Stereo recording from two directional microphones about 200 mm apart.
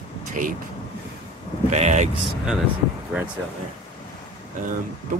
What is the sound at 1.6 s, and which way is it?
Speech, 35° right (ahead or behind).